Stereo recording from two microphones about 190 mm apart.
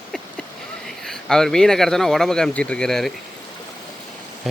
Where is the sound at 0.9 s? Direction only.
5° left (ahead or behind).